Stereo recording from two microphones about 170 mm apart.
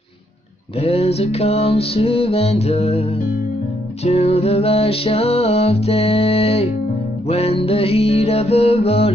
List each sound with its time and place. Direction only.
0.7 s music: 35° left (ahead or behind)